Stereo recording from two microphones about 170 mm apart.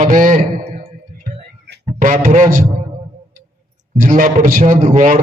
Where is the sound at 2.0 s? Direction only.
50° right (ahead or behind).